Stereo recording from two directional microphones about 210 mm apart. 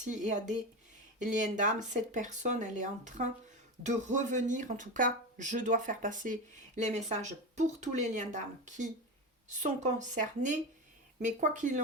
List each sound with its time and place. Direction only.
0.0 s speech: 35° right (ahead or behind)